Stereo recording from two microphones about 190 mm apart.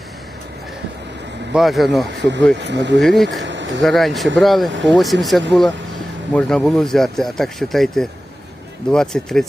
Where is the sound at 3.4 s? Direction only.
70° right (ahead or behind).